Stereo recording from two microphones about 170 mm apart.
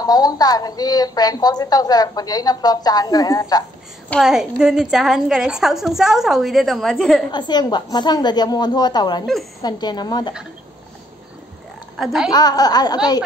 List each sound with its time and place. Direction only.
0.0 s a woman's voice: 20° left (ahead or behind)
4.1 s a woman's voice: centre (ahead or behind)
7.2 s a woman's voice: 25° left (ahead or behind)
9.2 s a woman's voice: centre (ahead or behind)
9.6 s a woman's voice: 25° left (ahead or behind)
12.0 s a woman's voice: 5° right (ahead or behind)
12.3 s a woman's voice: 25° left (ahead or behind)